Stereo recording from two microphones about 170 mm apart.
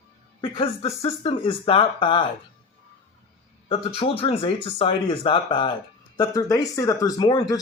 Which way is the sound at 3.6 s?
30° left (ahead or behind).